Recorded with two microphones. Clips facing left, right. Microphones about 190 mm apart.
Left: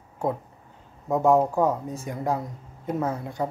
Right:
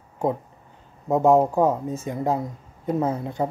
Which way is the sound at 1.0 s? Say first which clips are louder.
Right 3 dB; 20° right (ahead or behind).